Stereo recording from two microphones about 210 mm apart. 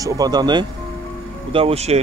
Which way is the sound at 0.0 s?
20° right (ahead or behind).